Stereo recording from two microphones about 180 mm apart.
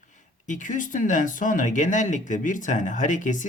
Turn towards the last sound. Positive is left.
turn(degrees=45)  # may be behind; listen again after turning